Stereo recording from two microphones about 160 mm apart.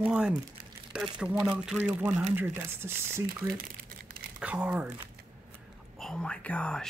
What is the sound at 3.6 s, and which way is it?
Crumpling, 65° right (ahead or behind).